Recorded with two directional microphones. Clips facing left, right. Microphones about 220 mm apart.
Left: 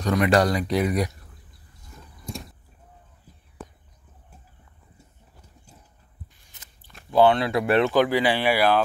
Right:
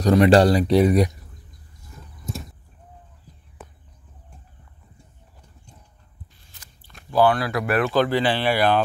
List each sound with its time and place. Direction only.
0.0 s speech: 30° right (ahead or behind)
2.3 s vehicle: 5° right (ahead or behind)
5.7 s horse: 5° left (ahead or behind)
6.5 s biting: 20° left (ahead or behind)
7.1 s speech: 25° left (ahead or behind)
7.9 s speech: 10° left (ahead or behind)